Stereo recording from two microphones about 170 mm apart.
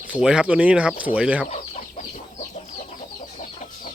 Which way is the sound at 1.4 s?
45° left (ahead or behind).